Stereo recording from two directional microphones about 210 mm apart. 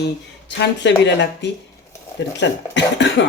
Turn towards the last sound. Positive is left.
turn(degrees=60)  # may be behind; listen again after turning